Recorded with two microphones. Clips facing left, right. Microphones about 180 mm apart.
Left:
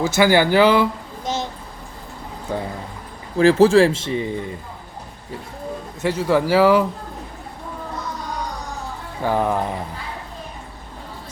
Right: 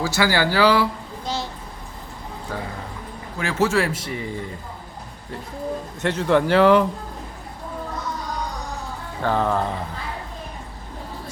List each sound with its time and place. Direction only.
0.0 s speech: 20° left (ahead or behind)
2.5 s speech: 20° left (ahead or behind)
3.3 s speech: 35° left (ahead or behind)
6.0 s speech: 5° left (ahead or behind)
9.2 s speech: 15° left (ahead or behind)